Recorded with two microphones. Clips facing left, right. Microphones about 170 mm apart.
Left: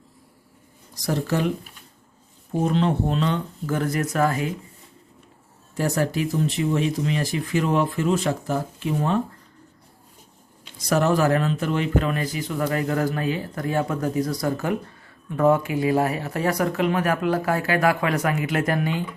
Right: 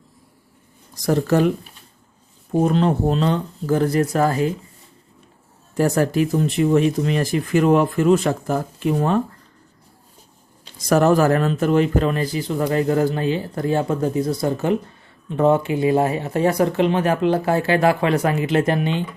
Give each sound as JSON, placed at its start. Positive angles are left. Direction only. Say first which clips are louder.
{"t": 1.0, "sound": "speech", "louder": "right 6 dB", "side_deg": -50}
{"t": 2.6, "sound": "speech", "louder": "right 4 dB", "side_deg": -45}
{"t": 5.7, "sound": "speech", "louder": "right 5 dB", "side_deg": -50}
{"t": 10.8, "sound": "speech", "louder": "right 4 dB", "side_deg": -45}